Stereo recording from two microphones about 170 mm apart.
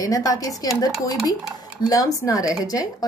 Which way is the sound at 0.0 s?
20° left (ahead or behind).